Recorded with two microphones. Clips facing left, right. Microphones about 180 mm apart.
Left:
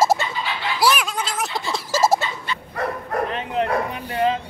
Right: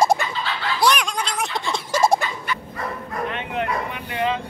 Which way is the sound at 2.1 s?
25° left (ahead or behind).